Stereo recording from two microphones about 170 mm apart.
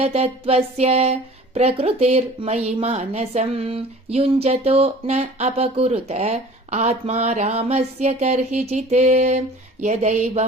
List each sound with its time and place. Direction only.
0.0 s a woman's voice: 35° right (ahead or behind)